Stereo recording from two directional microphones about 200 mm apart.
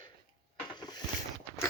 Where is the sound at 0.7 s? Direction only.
20° left (ahead or behind).